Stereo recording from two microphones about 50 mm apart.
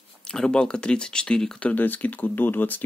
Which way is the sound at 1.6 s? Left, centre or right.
Left.